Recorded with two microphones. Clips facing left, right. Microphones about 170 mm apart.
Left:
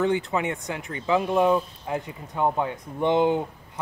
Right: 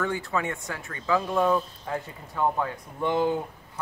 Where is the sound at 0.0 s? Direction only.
20° left (ahead or behind).